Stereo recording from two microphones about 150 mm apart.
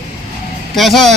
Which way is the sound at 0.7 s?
Centre (ahead or behind).